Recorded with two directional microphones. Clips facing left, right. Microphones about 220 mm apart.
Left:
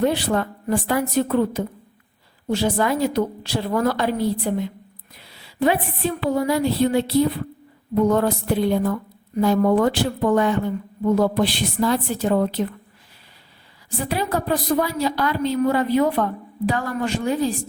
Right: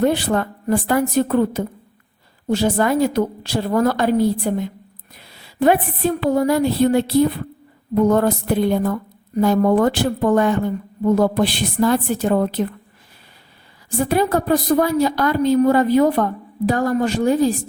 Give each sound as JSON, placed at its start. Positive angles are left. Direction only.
{"t": 0.0, "sound": "a woman's voice", "side_deg": -50}
{"t": 14.0, "sound": "a woman's voice", "side_deg": -50}